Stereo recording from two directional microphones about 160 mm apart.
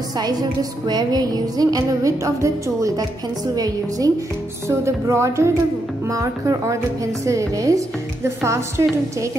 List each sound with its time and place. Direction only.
0.2 s music: 25° right (ahead or behind)